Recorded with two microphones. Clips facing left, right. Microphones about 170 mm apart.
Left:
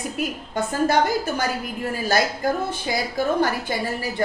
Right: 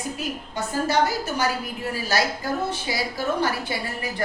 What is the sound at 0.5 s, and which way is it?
A woman's voice, 55° left (ahead or behind).